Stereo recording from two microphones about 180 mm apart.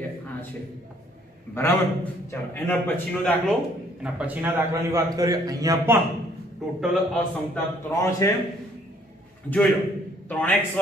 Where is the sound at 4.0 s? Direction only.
10° right (ahead or behind).